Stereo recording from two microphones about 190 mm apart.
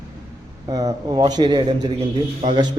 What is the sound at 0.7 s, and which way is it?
A man's voice, 20° right (ahead or behind).